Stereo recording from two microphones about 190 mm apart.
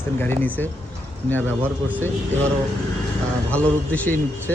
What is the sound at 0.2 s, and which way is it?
Speech, 10° left (ahead or behind).